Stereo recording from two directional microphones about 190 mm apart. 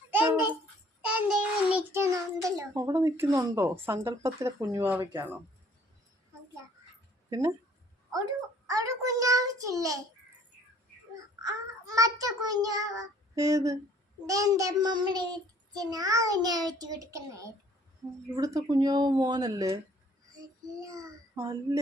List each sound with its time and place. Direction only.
0.1 s a sound: 10° right (ahead or behind)
1.0 s a child's voice: 5° right (ahead or behind)
7.3 s speech: 20° right (ahead or behind)
8.6 s a child's voice: 15° right (ahead or behind)
11.4 s a child's voice: 20° right (ahead or behind)
14.3 s child singing: 15° right (ahead or behind)
20.8 s a child's voice: 20° right (ahead or behind)